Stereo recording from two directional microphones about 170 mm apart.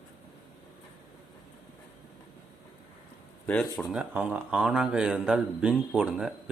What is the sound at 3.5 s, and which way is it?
Speech, 5° left (ahead or behind).